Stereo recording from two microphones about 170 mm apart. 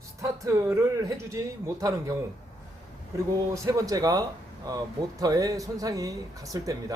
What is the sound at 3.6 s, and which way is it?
Speech, 20° right (ahead or behind).